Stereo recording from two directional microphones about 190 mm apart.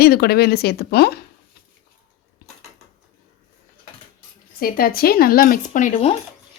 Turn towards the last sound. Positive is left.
turn(degrees=30)  # may be behind; listen again after turning